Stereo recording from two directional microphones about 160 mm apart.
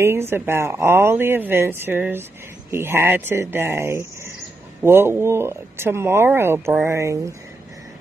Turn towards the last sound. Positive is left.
turn(degrees=-15)  # may be behind; listen again after turning